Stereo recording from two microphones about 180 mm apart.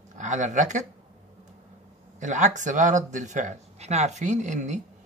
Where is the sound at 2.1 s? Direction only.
45° right (ahead or behind).